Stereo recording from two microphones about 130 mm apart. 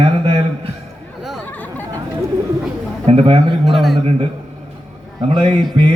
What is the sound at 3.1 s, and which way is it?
Speech, 50° right (ahead or behind).